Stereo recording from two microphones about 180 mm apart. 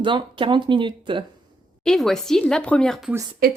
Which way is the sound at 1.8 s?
Centre (ahead or behind).